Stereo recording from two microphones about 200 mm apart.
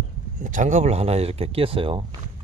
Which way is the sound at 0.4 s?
40° right (ahead or behind).